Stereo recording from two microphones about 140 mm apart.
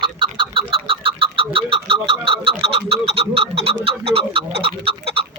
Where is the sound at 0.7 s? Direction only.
40° right (ahead or behind).